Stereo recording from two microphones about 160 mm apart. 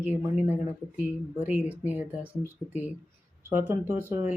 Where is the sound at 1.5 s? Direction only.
10° right (ahead or behind).